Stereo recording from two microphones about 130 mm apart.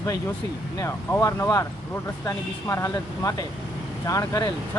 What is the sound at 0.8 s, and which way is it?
Speech, 25° left (ahead or behind).